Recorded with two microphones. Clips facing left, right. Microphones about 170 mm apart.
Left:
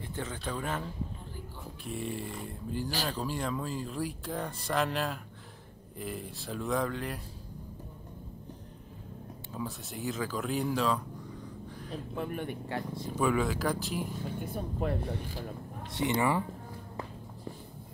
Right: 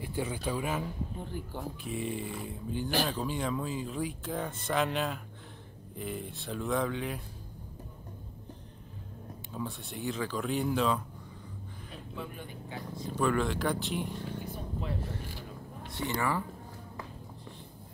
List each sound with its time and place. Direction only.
0.0 s speech: 10° right (ahead or behind)
1.9 s speech: centre (ahead or behind)
9.5 s speech: centre (ahead or behind)
12.2 s speech: 60° left (ahead or behind)
13.0 s speech: 5° left (ahead or behind)
14.4 s speech: 55° left (ahead or behind)
16.0 s speech: 20° left (ahead or behind)